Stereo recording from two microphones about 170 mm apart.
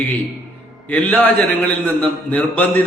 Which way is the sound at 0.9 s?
10° left (ahead or behind).